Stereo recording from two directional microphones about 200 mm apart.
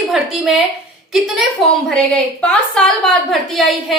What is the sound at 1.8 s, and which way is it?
A woman's voice, 5° left (ahead or behind).